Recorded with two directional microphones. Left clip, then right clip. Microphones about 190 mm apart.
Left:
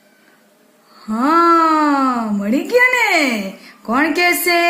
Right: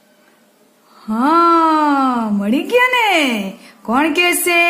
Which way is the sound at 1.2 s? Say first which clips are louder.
Even; 30° right (ahead or behind).